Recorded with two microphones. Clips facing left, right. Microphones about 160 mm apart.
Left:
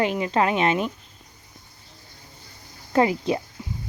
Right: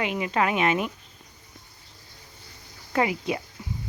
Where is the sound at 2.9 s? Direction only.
30° left (ahead or behind).